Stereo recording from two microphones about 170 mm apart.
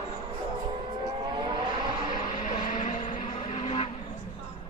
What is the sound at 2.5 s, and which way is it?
Vehicle, 45° left (ahead or behind).